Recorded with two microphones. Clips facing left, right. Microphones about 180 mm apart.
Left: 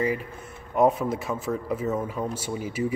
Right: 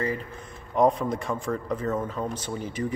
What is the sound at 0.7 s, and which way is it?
Speech, 5° left (ahead or behind).